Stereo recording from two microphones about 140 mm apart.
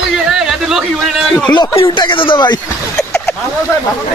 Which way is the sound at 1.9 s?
35° left (ahead or behind).